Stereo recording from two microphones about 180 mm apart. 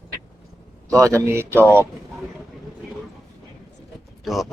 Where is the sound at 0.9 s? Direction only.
15° right (ahead or behind).